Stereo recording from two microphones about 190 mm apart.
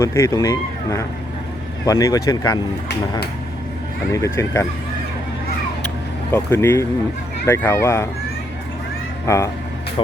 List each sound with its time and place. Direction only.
0.0 s speech: 15° left (ahead or behind)
4.1 s speech: 15° left (ahead or behind)
6.3 s speech: 10° left (ahead or behind)
9.2 s speech: 15° left (ahead or behind)